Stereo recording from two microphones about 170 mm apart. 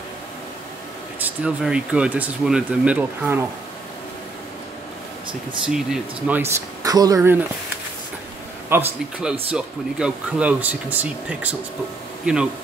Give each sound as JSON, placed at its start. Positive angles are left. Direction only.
{"t": 1.2, "sound": "speech", "side_deg": -5}
{"t": 5.7, "sound": "speech", "side_deg": -5}
{"t": 6.8, "sound": "speech", "side_deg": -20}
{"t": 8.6, "sound": "speech", "side_deg": -10}